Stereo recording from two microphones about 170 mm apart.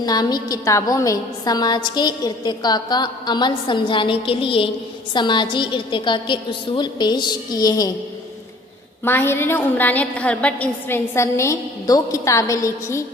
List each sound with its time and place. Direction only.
0.0 s a woman's voice: 25° left (ahead or behind)
9.0 s a woman's voice: 15° left (ahead or behind)